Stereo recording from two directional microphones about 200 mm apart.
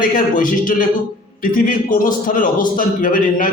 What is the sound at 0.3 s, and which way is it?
A man's voice, 45° left (ahead or behind).